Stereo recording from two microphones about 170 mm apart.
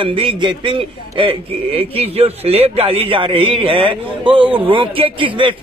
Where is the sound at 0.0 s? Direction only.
30° right (ahead or behind).